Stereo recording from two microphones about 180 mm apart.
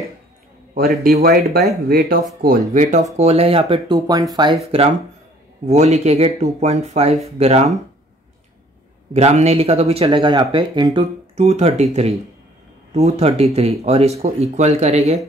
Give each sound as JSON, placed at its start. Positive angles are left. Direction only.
{"t": 1.0, "sound": "speech", "side_deg": -55}
{"t": 2.7, "sound": "speech", "side_deg": -40}
{"t": 4.6, "sound": "speech", "side_deg": -35}
{"t": 9.1, "sound": "speech", "side_deg": -35}